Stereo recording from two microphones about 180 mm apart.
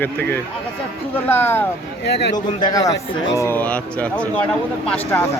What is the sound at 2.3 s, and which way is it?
Speech, 25° left (ahead or behind).